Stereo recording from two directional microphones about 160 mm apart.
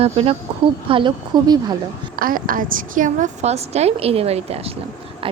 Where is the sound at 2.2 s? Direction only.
60° right (ahead or behind); by 4.7 s 40° right (ahead or behind).